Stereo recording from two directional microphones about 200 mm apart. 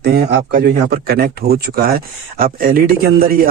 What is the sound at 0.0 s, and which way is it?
A man's voice, 55° right (ahead or behind).